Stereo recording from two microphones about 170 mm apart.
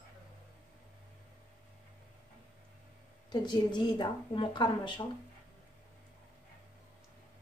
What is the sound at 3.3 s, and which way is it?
A woman's voice, 25° left (ahead or behind).